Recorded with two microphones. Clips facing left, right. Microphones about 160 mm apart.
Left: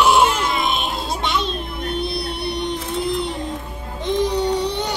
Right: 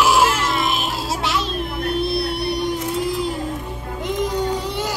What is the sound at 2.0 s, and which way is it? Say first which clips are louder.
Music: right 3 dB; 5° right (ahead or behind).